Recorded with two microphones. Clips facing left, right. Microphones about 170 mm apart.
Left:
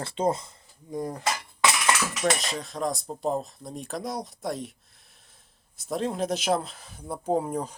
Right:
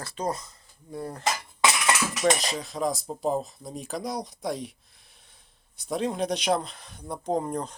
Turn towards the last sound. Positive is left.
turn(degrees=5)  # may be behind; listen again after turning